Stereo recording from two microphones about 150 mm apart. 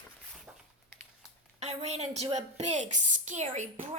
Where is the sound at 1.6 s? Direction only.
50° right (ahead or behind).